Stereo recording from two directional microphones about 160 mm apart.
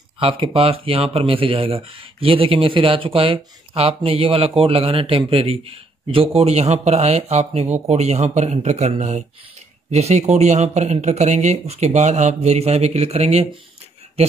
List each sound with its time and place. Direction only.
0.2 s speech: 35° right (ahead or behind)